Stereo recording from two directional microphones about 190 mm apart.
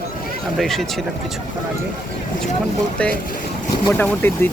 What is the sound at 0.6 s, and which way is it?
Speech, centre (ahead or behind).